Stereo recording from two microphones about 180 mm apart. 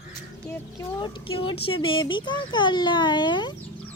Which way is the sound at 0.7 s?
25° left (ahead or behind).